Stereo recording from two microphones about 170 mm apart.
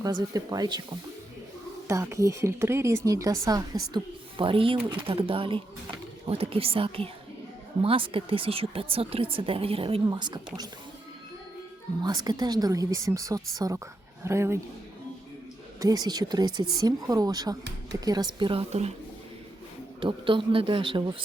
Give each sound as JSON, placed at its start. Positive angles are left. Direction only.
{"t": 0.0, "sound": "speech", "side_deg": -25}
{"t": 1.9, "sound": "speech", "side_deg": -15}
{"t": 12.0, "sound": "speech", "side_deg": -25}
{"t": 15.8, "sound": "speech", "side_deg": -20}
{"t": 20.0, "sound": "speech", "side_deg": -30}